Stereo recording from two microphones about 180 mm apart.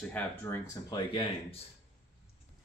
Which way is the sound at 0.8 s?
25° left (ahead or behind).